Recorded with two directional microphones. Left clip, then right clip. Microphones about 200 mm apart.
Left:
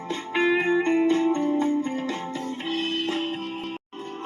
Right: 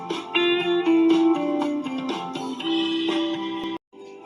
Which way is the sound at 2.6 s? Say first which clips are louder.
Right 3 dB; 25° right (ahead or behind).